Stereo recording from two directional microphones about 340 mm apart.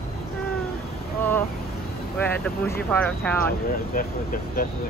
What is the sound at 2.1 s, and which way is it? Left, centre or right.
Speech, centre.